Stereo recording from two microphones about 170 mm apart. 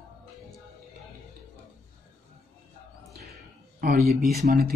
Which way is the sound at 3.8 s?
60° right (ahead or behind).